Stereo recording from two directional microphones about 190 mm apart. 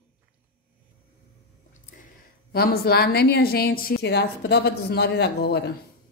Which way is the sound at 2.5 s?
55° left (ahead or behind).